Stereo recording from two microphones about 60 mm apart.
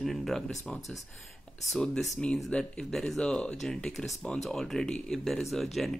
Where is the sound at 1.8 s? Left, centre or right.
Centre.